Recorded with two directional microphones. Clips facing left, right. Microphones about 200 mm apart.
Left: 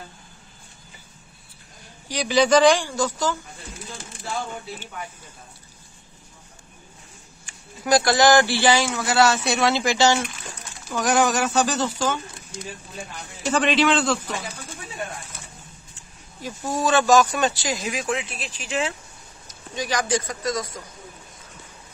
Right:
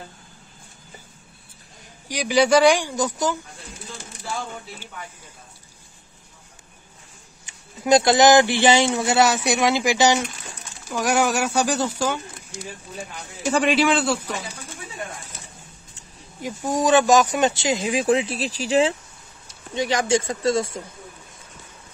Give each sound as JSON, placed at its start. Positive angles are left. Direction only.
{"t": 2.0, "sound": "a man's voice", "side_deg": -10}
{"t": 7.4, "sound": "a man's voice", "side_deg": -20}
{"t": 13.4, "sound": "a man's voice", "side_deg": -10}
{"t": 16.3, "sound": "speech", "side_deg": -15}